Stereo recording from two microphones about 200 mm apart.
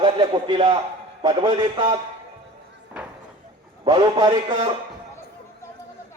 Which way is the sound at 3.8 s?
25° right (ahead or behind).